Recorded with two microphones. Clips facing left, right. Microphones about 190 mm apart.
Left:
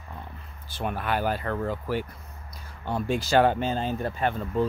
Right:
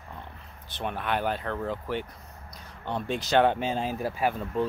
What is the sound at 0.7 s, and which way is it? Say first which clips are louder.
Speech: left 2 dB; 5° left (ahead or behind).